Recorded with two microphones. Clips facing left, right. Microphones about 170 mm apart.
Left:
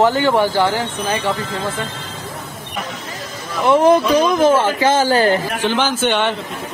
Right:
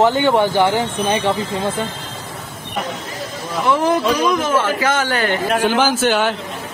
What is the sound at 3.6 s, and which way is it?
Speech, 20° left (ahead or behind).